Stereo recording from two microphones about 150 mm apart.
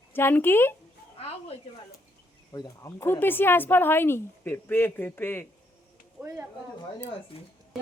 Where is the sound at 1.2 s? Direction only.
40° left (ahead or behind).